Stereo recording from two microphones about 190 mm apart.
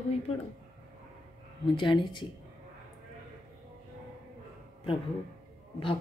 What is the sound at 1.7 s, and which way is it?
Speech, 25° left (ahead or behind).